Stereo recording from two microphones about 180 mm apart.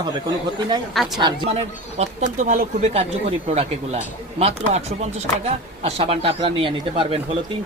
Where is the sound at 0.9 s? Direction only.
Centre (ahead or behind).